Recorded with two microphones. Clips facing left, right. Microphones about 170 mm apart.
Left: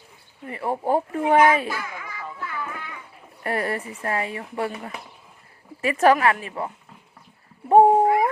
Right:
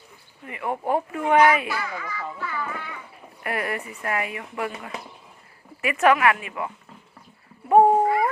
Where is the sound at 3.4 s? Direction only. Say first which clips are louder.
Left 2 dB; 30° left (ahead or behind).